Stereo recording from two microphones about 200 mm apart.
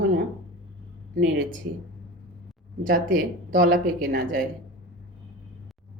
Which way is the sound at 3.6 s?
50° right (ahead or behind).